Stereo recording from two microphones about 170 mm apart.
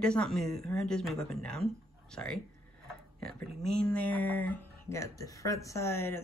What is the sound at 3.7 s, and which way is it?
Speech, 5° left (ahead or behind).